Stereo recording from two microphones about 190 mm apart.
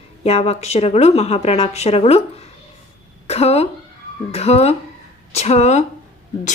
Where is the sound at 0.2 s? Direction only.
35° left (ahead or behind).